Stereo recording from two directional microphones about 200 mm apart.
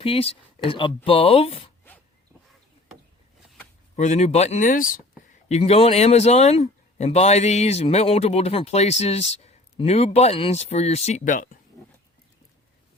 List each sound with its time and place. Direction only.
0.0 s speech: 30° left (ahead or behind)
3.9 s speech: 35° left (ahead or behind)